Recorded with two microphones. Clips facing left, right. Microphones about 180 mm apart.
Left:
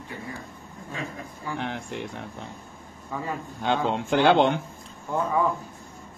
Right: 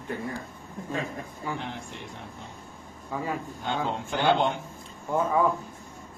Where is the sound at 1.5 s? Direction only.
15° right (ahead or behind).